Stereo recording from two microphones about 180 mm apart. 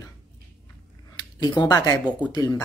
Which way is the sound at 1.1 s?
25° left (ahead or behind).